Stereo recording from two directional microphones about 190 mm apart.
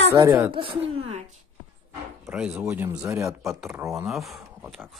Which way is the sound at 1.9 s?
5° right (ahead or behind).